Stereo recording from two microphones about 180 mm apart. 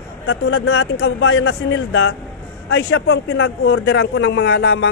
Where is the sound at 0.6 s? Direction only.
85° left.